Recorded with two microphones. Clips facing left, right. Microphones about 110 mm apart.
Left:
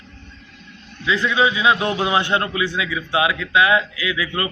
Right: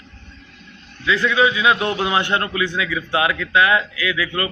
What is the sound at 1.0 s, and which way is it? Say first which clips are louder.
A man's voice: right 1 dB; 20° left (ahead or behind).